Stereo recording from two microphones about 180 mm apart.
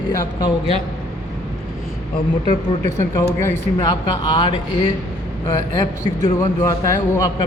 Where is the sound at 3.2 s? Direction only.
15° left (ahead or behind).